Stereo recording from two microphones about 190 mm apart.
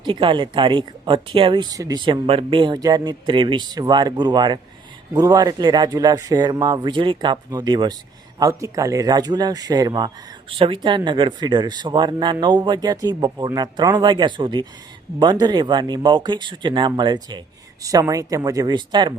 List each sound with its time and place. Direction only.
0.0 s speech: 25° right (ahead or behind)